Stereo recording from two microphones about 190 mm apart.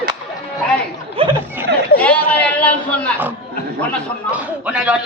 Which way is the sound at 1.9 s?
5° left (ahead or behind).